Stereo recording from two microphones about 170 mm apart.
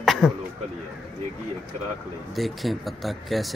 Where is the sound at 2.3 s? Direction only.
Centre (ahead or behind).